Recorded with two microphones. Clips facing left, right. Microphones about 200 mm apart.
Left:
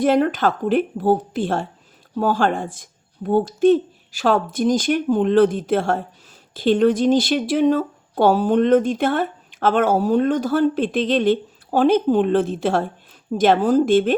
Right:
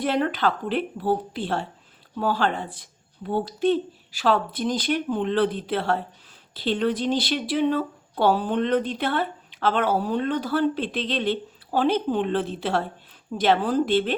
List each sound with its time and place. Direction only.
0.0 s speech: 45° left (ahead or behind)